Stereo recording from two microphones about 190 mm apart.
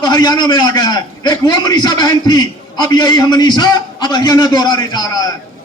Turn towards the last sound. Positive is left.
turn(degrees=20)  # may be behind; listen again after turning